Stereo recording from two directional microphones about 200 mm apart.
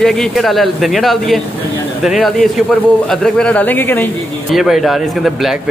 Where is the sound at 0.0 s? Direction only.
Centre (ahead or behind).